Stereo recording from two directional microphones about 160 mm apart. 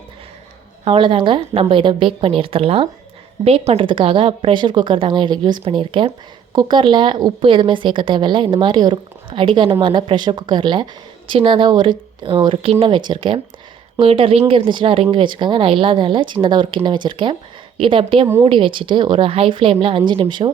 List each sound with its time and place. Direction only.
0.9 s a woman's voice: 30° right (ahead or behind)